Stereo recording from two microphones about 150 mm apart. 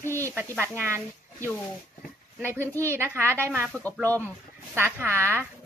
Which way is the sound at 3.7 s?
10° left (ahead or behind).